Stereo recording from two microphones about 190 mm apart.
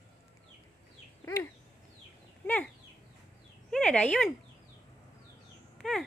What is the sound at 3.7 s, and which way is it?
Speech, 5° left (ahead or behind).